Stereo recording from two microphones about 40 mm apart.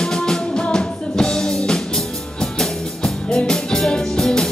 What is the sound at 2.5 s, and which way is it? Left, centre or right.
Music, centre.